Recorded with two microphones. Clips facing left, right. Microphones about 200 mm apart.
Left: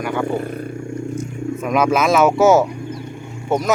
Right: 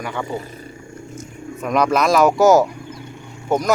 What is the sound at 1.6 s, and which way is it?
Speech, 5° left (ahead or behind).